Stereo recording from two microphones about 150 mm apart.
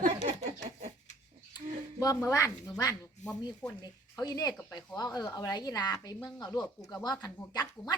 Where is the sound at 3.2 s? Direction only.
55° left (ahead or behind).